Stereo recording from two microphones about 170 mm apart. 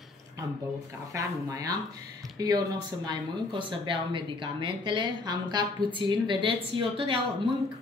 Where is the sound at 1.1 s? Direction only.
20° right (ahead or behind).